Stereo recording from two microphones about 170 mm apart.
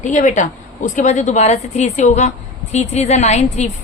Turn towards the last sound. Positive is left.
turn(degrees=40)  # may be behind; listen again after turning